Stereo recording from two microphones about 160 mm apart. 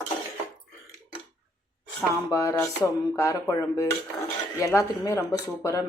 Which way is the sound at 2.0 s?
20° left (ahead or behind).